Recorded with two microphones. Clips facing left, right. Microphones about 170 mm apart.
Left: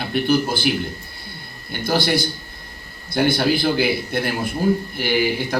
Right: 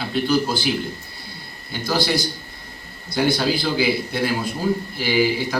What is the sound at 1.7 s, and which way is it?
A man's voice, 55° left (ahead or behind).